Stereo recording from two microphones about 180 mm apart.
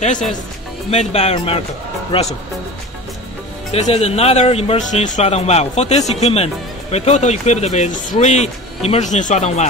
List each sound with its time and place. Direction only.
0.8 s speech: 35° left (ahead or behind)
3.7 s speech: 35° left (ahead or behind)